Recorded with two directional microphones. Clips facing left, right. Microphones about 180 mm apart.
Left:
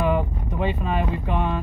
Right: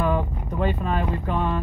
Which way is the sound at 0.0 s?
15° left (ahead or behind).